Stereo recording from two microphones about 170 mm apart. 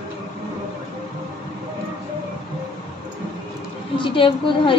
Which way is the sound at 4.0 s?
30° left (ahead or behind).